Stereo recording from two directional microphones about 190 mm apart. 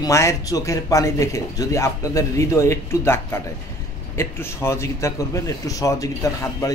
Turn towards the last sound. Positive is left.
turn(degrees=15)  # may be behind; listen again after turning